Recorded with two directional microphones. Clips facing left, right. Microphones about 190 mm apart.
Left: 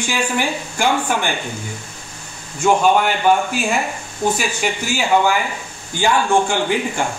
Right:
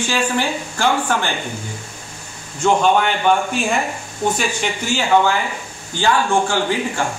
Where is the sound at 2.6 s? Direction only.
5° left (ahead or behind).